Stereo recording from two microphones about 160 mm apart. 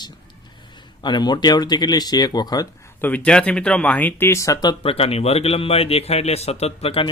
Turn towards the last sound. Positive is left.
turn(degrees=35)  # may be behind; listen again after turning